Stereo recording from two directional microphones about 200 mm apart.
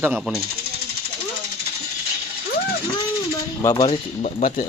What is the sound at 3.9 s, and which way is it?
Speech, 35° left (ahead or behind).